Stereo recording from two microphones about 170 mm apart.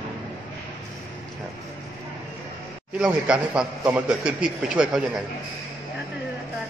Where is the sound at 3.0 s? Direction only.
5° right (ahead or behind).